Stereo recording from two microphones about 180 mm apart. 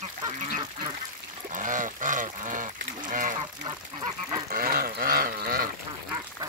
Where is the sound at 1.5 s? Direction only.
45° right (ahead or behind).